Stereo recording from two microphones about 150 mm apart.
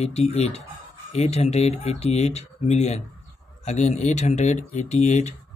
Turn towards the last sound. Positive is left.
turn(degrees=50)  # may be behind; listen again after turning